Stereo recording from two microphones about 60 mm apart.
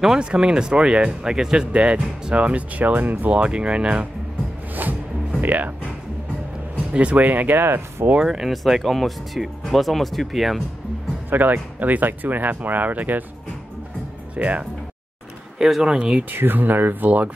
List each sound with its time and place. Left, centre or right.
0.0 s speech: centre; by 3.3 s right
3.3 s speech: centre
5.4 s speech: right
6.9 s speech: right
8.2 s speech: centre
11.2 s speech: right
14.3 s speech: right
15.6 s speech: centre
16.2 s speech: right